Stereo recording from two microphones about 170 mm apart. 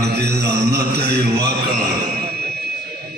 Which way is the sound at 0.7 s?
70° right (ahead or behind).